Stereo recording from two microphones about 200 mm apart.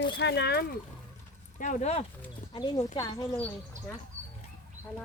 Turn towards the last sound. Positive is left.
turn(degrees=-35)  # may be behind; listen again after turning